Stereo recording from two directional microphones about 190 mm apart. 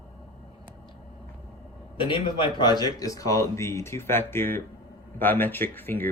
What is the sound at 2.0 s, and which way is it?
A man's voice, 25° left (ahead or behind).